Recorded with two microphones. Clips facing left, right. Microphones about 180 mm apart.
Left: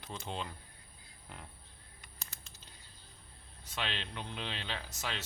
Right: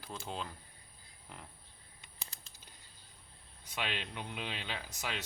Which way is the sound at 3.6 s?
10° right (ahead or behind).